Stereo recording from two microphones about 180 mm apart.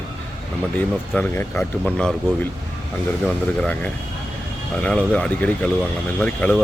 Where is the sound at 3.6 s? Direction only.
5° left (ahead or behind).